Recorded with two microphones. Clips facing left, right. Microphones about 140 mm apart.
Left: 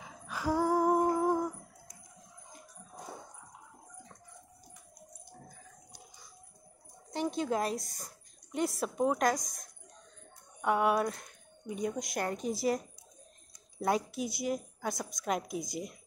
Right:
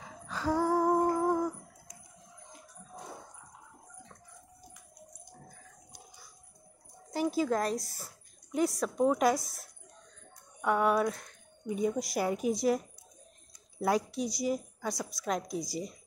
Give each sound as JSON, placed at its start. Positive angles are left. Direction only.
{"t": 0.0, "sound": "music", "side_deg": 10}
{"t": 7.1, "sound": "a woman's voice", "side_deg": -5}